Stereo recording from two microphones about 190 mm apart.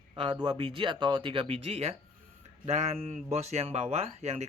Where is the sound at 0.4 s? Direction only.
25° right (ahead or behind).